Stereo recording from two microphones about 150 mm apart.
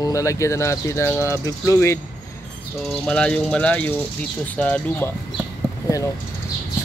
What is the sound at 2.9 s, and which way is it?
Speech, 5° left (ahead or behind).